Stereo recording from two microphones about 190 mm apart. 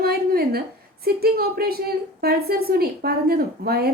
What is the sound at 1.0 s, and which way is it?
A woman's voice, 55° right (ahead or behind).